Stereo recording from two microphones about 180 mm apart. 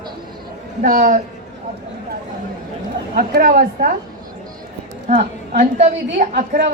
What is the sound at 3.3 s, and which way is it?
Speech, 50° right (ahead or behind).